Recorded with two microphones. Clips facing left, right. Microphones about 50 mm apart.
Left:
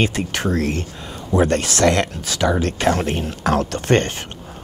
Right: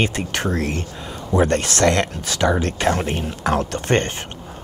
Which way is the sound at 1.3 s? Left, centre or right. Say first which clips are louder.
Left 1 dB; right.